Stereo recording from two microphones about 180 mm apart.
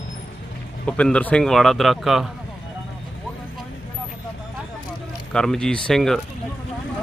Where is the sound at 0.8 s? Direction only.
5° left (ahead or behind).